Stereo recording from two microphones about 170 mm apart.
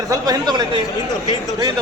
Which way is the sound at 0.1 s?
25° right (ahead or behind).